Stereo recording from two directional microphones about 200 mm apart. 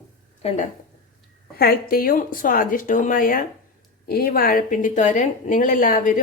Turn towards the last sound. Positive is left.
turn(degrees=45)  # may be behind; listen again after turning